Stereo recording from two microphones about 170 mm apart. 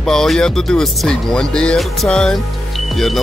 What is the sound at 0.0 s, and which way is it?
Speech, 5° left (ahead or behind).